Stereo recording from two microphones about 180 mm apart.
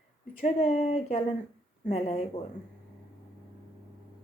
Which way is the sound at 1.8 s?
35° left (ahead or behind).